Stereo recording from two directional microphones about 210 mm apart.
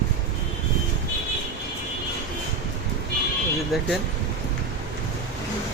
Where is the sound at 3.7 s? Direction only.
Centre (ahead or behind).